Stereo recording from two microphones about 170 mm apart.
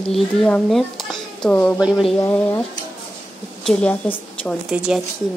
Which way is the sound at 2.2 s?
10° left (ahead or behind).